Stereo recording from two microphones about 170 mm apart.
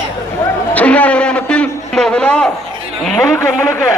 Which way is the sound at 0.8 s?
10° left (ahead or behind).